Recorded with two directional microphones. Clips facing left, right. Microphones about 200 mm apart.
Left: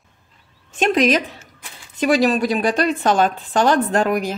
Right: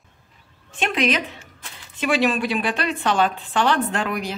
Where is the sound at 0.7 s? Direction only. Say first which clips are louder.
Left 6 dB; 40° left (ahead or behind).